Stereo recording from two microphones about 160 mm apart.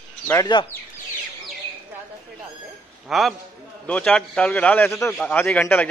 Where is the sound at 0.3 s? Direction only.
25° left (ahead or behind).